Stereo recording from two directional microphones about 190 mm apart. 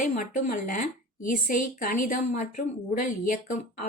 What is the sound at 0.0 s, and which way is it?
A woman's voice, 40° left (ahead or behind).